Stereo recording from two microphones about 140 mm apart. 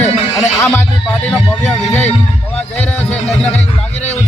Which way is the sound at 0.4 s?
15° left (ahead or behind).